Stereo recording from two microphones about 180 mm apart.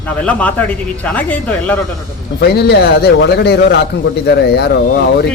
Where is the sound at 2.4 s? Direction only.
65° left (ahead or behind).